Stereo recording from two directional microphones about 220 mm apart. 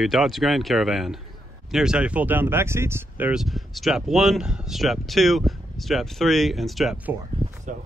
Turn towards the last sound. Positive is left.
turn(degrees=-35)  # may be behind; listen again after turning